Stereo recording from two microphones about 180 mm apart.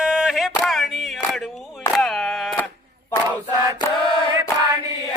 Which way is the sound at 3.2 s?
10° right (ahead or behind).